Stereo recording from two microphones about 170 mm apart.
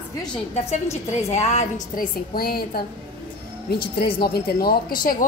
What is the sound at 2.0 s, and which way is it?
Speech, 60° left (ahead or behind).